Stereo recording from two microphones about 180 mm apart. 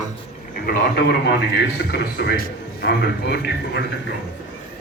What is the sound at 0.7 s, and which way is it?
A man's voice, 60° left (ahead or behind).